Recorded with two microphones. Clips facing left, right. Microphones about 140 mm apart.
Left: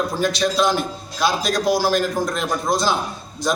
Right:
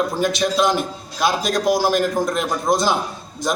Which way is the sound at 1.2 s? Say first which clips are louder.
Right 1 dB; 50° right (ahead or behind).